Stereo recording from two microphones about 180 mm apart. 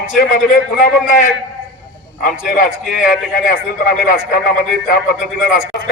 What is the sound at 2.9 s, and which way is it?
A man's voice, 55° left (ahead or behind).